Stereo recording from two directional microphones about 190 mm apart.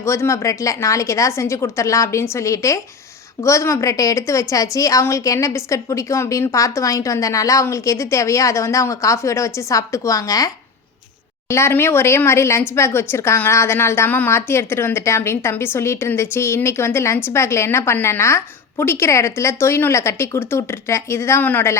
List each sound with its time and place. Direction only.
0.0 s speech: 15° left (ahead or behind)